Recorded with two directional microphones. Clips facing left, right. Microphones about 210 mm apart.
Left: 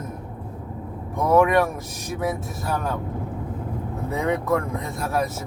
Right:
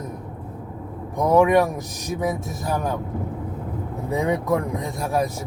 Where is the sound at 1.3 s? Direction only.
15° right (ahead or behind).